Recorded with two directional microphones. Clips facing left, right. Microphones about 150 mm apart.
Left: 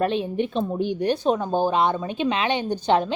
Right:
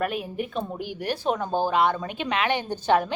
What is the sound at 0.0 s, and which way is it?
Speech, 25° left (ahead or behind).